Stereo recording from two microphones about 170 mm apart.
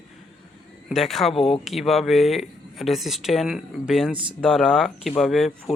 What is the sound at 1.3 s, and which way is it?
Speech, 35° left (ahead or behind).